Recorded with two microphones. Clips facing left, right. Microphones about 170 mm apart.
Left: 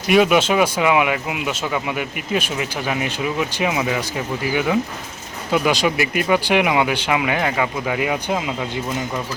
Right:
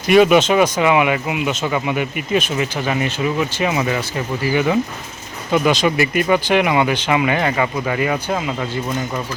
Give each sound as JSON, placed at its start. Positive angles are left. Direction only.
{"t": 0.1, "sound": "speech", "side_deg": 5}